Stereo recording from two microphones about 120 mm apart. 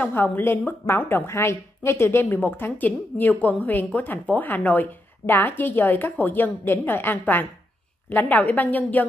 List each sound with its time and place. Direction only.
0.0 s a woman's voice: 15° left (ahead or behind)